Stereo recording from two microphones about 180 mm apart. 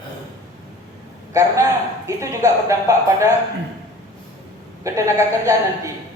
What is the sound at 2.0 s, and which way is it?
Speech, 15° right (ahead or behind).